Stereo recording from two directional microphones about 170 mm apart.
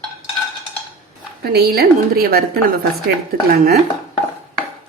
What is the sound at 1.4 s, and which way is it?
A woman's voice, 70° right (ahead or behind).